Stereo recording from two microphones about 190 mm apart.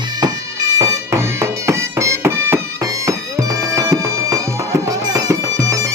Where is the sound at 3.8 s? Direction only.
15° right (ahead or behind).